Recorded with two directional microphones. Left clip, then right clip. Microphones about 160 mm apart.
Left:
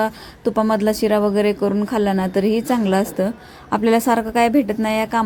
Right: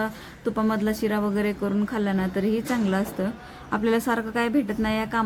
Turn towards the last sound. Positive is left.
turn(degrees=30)  # may be behind; listen again after turning